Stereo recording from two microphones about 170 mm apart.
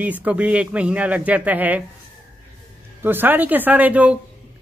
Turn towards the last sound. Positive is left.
turn(degrees=-10)  # may be behind; listen again after turning